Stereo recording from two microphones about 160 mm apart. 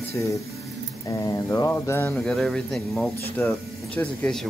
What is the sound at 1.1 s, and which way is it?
Mantra, 20° left (ahead or behind).